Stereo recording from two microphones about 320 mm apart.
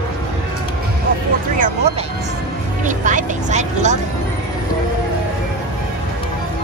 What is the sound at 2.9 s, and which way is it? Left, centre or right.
Vehicle, right.